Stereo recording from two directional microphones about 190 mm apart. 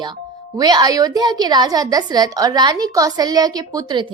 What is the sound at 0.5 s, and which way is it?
A woman's voice, 20° right (ahead or behind).